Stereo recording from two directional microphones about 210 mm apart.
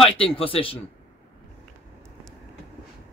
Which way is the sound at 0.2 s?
25° left (ahead or behind).